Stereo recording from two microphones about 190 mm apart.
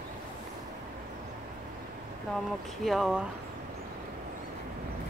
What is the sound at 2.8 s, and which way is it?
Speech, centre (ahead or behind).